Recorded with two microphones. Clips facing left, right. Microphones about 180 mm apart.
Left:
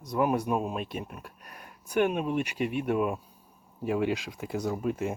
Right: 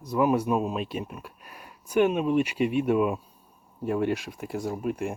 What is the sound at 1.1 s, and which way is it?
Speech, 50° left (ahead or behind).